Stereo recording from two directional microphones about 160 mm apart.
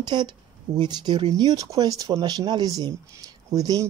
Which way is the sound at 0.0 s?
30° right (ahead or behind).